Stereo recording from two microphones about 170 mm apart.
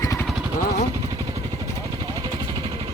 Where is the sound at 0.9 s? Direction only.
25° right (ahead or behind).